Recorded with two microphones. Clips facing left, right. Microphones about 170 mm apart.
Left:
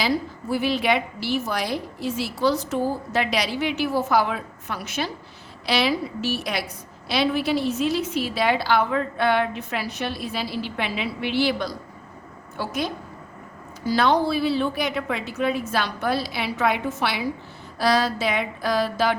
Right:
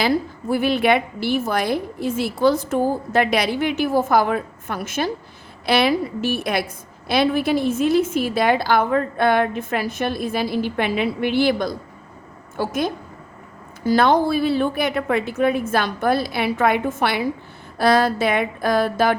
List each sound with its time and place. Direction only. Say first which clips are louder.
0.0 s a woman's voice: right 4 dB; 55° right (ahead or behind)